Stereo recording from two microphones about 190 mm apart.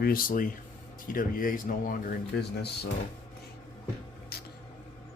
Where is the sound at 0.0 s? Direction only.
50° left (ahead or behind).